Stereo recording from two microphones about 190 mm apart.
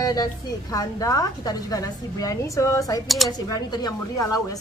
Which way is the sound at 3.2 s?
Centre (ahead or behind).